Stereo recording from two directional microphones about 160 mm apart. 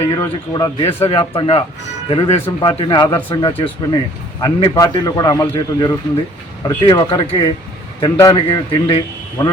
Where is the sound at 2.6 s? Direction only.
30° left (ahead or behind).